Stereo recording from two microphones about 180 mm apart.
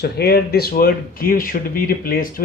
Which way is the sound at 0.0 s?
60° left (ahead or behind).